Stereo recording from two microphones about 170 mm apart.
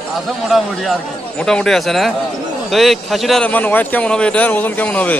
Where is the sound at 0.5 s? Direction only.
Centre (ahead or behind).